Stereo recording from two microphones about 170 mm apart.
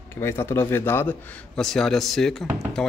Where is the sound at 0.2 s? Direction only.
15° left (ahead or behind).